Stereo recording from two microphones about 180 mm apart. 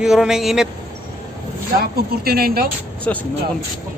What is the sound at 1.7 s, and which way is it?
Speech, 60° right (ahead or behind).